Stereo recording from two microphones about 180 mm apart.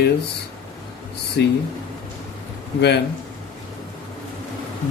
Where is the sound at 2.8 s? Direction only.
70° left (ahead or behind).